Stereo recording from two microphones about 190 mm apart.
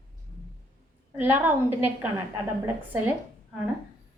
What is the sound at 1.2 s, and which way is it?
Speech, 10° right (ahead or behind).